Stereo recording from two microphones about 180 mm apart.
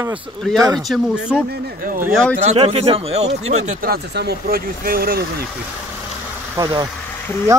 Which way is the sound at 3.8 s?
65° right (ahead or behind).